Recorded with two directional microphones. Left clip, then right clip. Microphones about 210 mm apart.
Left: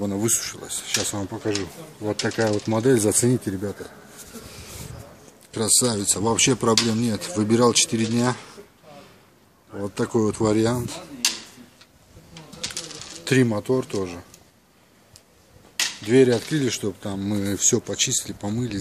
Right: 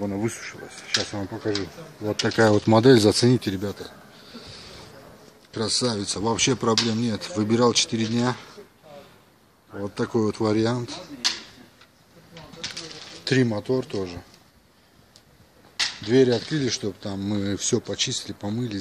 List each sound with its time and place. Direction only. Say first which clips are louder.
0.0 s speech: left 3 dB; 5° left (ahead or behind)
2.2 s speech: right 5 dB; 35° right (ahead or behind)
3.1 s speech: right 2 dB; 20° right (ahead or behind)
5.5 s speech: left 2 dB; 10° left (ahead or behind)
9.8 s speech: left 2 dB; 5° left (ahead or behind)
13.2 s speech: left 2 dB; 5° left (ahead or behind)
15.7 s speech: left 2 dB; centre (ahead or behind)